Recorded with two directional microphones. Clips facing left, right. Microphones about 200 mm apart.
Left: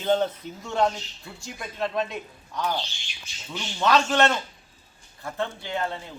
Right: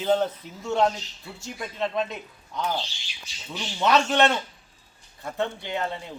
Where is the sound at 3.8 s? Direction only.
20° right (ahead or behind).